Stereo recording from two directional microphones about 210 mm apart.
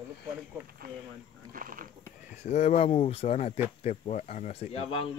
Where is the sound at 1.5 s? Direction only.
40° right (ahead or behind).